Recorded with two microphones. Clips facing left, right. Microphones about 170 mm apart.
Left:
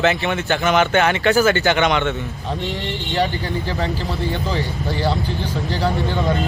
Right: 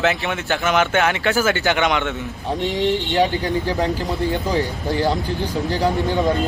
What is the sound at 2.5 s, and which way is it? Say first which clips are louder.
Speech: right 7 dB; 15° right (ahead or behind).